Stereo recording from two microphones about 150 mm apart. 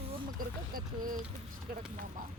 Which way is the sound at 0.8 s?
65° right (ahead or behind).